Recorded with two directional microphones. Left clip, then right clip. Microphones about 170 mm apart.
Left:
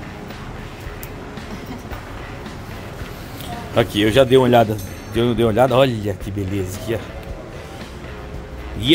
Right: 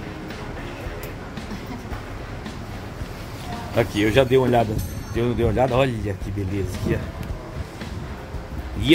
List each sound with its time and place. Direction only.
3.7 s speech: 25° left (ahead or behind)